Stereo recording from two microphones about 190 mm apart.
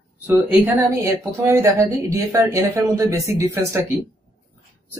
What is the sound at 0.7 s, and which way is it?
Speech, 15° right (ahead or behind).